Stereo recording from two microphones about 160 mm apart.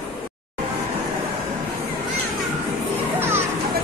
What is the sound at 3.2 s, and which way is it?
Children playing, 15° right (ahead or behind).